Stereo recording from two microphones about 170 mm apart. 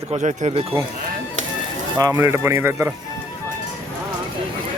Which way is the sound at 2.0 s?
20° right (ahead or behind).